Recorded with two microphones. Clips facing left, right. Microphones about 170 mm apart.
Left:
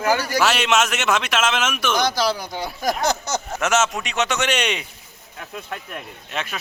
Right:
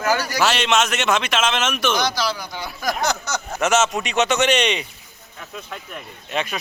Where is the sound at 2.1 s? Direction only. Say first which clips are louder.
Left 2 dB; 45° left (ahead or behind).